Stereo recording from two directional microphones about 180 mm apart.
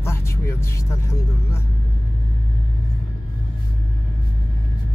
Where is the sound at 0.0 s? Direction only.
15° left (ahead or behind).